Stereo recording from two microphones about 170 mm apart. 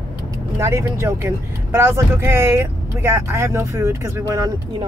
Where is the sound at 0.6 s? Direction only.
15° right (ahead or behind).